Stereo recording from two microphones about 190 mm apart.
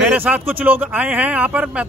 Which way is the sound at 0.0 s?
5° right (ahead or behind).